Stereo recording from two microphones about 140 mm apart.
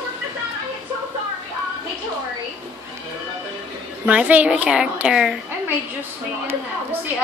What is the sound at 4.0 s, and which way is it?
A woman's voice, 10° right (ahead or behind).